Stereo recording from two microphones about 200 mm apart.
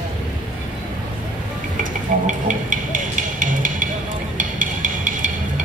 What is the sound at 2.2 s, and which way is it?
Music, 40° right (ahead or behind).